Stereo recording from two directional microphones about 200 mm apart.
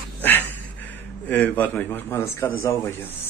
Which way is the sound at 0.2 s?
10° left (ahead or behind).